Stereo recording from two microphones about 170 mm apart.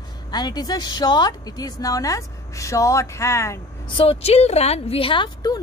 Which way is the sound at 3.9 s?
35° left (ahead or behind).